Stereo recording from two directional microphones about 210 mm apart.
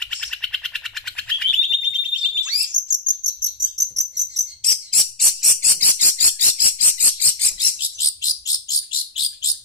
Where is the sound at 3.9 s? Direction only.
Centre (ahead or behind).